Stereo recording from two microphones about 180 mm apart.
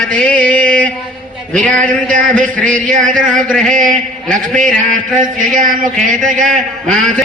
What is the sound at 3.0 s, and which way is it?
Speech, 45° right (ahead or behind).